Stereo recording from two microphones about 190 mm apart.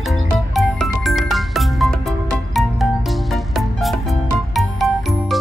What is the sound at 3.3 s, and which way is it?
Music, centre (ahead or behind).